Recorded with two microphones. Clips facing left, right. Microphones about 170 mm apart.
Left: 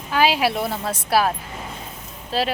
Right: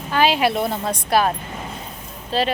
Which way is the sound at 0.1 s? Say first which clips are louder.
Right 1 dB; 5° left (ahead or behind).